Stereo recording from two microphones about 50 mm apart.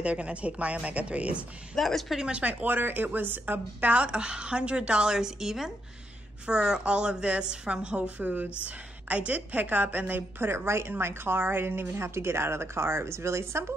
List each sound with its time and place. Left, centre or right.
0.0 s a woman's voice: right
1.8 s a woman's voice: centre
2.1 s a woman's voice: centre
2.4 s a woman's voice: right